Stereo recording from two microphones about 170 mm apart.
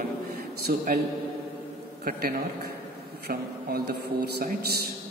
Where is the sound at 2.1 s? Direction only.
65° right (ahead or behind).